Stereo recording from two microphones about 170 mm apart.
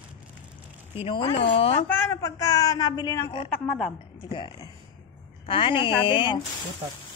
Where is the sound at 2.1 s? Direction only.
20° left (ahead or behind).